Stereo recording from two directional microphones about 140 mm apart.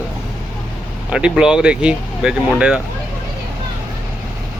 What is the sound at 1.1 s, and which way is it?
Speech, 5° right (ahead or behind).